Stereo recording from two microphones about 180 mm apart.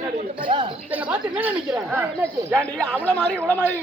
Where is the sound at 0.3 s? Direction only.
30° right (ahead or behind).